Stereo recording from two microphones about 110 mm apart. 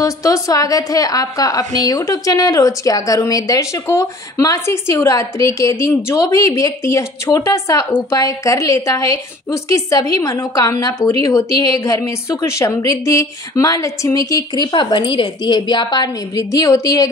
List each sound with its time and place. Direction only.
0.0 s a woman's voice: 30° left (ahead or behind)